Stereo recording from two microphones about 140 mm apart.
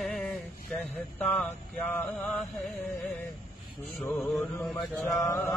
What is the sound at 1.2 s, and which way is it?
Mantra, 10° left (ahead or behind).